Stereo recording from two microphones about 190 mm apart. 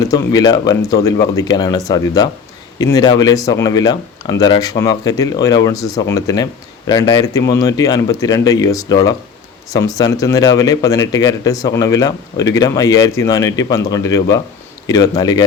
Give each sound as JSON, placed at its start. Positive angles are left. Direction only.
{"t": 0.0, "sound": "speech", "side_deg": 20}